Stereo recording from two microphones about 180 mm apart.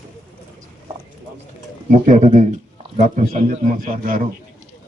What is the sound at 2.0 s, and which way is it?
A man's voice, 40° right (ahead or behind).